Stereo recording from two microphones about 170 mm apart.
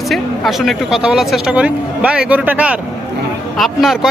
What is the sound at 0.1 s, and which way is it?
Speech, centre (ahead or behind).